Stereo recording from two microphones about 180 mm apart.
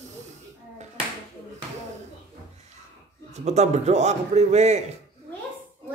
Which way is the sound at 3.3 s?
40° right (ahead or behind).